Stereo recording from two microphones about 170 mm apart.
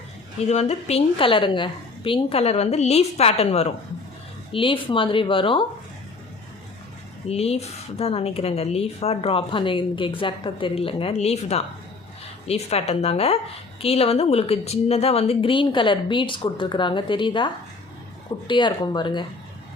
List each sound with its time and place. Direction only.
0.4 s a woman's voice: 40° left (ahead or behind)
7.3 s a woman's voice: 35° left (ahead or behind)